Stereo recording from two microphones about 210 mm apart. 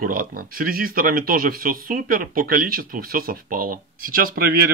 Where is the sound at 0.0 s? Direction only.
45° right (ahead or behind).